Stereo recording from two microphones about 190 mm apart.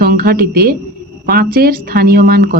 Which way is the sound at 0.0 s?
50° right (ahead or behind).